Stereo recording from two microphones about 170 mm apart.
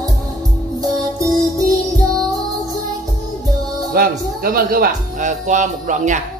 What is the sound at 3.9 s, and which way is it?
Music, 60° right (ahead or behind).